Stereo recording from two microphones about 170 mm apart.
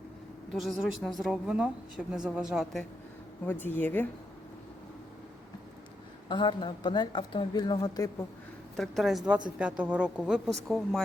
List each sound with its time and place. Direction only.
0.5 s a woman's voice: centre (ahead or behind)
3.4 s speech: 10° left (ahead or behind)
6.2 s speech: 25° left (ahead or behind)
8.7 s a woman's voice: centre (ahead or behind)